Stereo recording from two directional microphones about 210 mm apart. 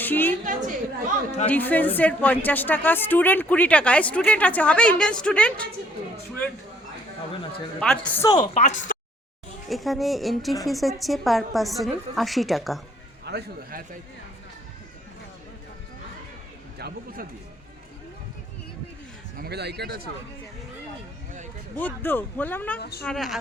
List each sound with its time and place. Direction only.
0.0 s a woman's voice: 10° left (ahead or behind)
0.4 s a woman's voice: 40° right (ahead or behind)
1.5 s a woman's voice: 10° left (ahead or behind)
7.8 s a woman's voice: 5° left (ahead or behind)
8.5 s speech: 35° left (ahead or behind)
9.6 s a woman's voice: centre (ahead or behind)
13.2 s speech: 45° right (ahead or behind)
16.7 s a sound: 45° right (ahead or behind)
19.4 s speech: 50° right (ahead or behind)
21.8 s a woman's voice: 10° left (ahead or behind)